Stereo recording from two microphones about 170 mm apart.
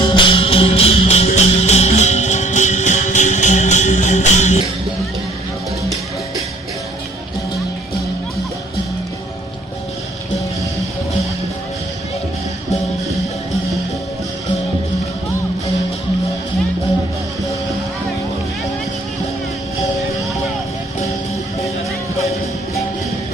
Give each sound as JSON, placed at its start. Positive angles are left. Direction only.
{"t": 0.0, "sound": "music", "side_deg": 30}